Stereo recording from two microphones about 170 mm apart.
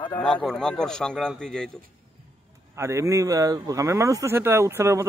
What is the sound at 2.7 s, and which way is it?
Speech, 15° right (ahead or behind).